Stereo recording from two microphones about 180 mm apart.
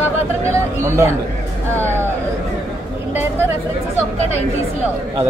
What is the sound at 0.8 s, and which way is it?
Speech, 15° right (ahead or behind).